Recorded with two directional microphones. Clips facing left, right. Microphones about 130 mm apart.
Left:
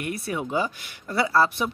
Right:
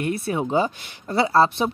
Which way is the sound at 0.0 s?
30° right (ahead or behind).